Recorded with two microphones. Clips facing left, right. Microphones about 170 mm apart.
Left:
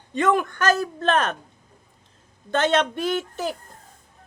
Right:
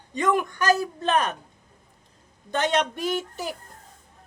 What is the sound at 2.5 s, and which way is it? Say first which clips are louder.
A woman's voice: left 3 dB; 15° right (ahead or behind).